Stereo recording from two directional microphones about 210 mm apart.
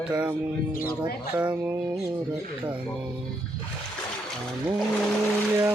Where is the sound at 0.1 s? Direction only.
15° right (ahead or behind).